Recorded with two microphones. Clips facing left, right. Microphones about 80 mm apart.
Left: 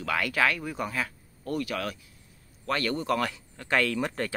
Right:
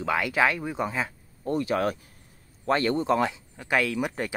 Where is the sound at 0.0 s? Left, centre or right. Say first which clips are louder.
Right 3 dB; centre.